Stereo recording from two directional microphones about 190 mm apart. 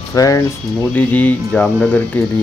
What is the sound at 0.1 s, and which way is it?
Speech, 20° left (ahead or behind).